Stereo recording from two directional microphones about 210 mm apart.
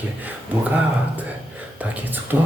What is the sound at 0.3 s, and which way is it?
Speech, 10° right (ahead or behind).